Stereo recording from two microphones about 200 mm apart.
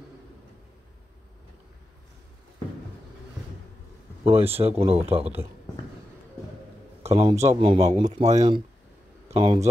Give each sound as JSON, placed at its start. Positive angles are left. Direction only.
{"t": 4.2, "sound": "a man's voice", "side_deg": -30}
{"t": 7.0, "sound": "a man's voice", "side_deg": -30}